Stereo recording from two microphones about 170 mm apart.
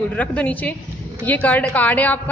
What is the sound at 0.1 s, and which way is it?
A woman's voice, 10° left (ahead or behind).